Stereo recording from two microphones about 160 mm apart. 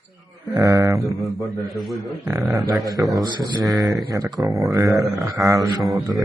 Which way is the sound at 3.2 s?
30° right (ahead or behind).